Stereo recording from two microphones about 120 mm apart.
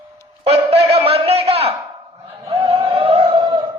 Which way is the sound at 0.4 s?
60° right (ahead or behind).